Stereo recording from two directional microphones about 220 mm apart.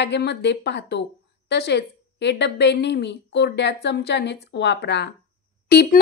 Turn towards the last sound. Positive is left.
turn(degrees=45)  # may be behind; listen again after turning